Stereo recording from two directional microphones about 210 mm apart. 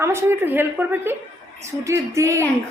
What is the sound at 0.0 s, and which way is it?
A woman's voice, 10° right (ahead or behind).